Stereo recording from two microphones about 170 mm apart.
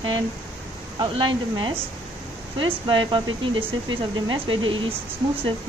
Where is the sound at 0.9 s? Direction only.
30° right (ahead or behind).